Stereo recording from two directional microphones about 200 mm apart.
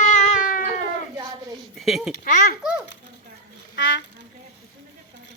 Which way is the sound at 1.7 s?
Centre (ahead or behind).